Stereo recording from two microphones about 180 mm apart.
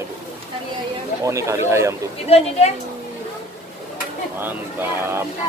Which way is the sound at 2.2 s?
35° left (ahead or behind).